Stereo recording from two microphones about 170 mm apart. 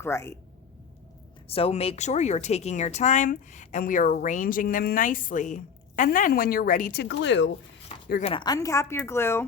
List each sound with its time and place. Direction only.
0.0 s a woman's voice: 15° left (ahead or behind)
1.5 s a woman's voice: 35° left (ahead or behind); by 7.5 s 90° left
8.2 s a woman's voice: 30° left (ahead or behind); by 9.5 s 15° left (ahead or behind)